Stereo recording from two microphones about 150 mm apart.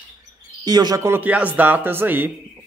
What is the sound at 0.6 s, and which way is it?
A man's voice, 25° right (ahead or behind).